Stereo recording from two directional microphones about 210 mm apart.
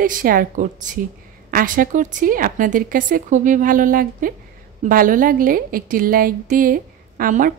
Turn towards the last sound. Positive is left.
turn(degrees=-40)  # may be behind; listen again after turning